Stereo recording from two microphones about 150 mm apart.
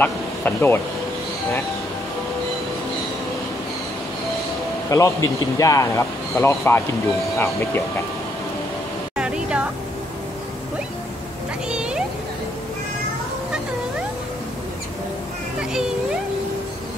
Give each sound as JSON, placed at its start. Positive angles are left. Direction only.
{"t": 0.0, "sound": "speech", "side_deg": 15}
{"t": 4.8, "sound": "speech", "side_deg": 20}
{"t": 9.1, "sound": "music", "side_deg": -5}
{"t": 11.7, "sound": "a sound", "side_deg": -5}